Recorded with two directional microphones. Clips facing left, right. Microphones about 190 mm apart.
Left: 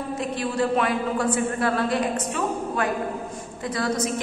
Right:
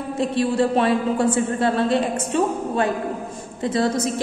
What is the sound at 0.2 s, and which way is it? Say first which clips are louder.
A woman's voice: right 7 dB; 30° right (ahead or behind).